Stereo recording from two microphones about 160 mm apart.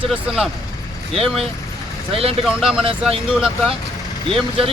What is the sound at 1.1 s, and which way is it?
Speech, 35° right (ahead or behind).